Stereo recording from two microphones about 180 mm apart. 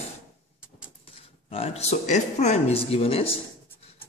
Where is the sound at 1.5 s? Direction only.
35° left (ahead or behind).